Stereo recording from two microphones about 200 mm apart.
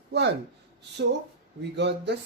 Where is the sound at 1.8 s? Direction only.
60° right (ahead or behind).